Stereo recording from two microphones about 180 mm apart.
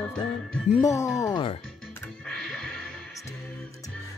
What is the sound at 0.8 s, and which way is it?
Speech, 15° left (ahead or behind).